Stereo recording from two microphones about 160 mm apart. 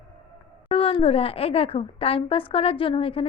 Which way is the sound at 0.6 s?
35° left (ahead or behind).